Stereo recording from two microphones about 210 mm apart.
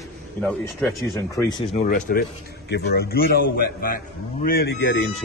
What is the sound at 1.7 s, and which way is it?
A man's voice, 35° left (ahead or behind).